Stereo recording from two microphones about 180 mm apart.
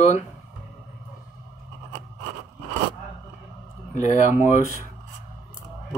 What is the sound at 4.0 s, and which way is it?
Speech, 40° left (ahead or behind).